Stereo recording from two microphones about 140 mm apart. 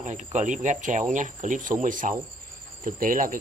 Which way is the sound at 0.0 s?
60° right (ahead or behind).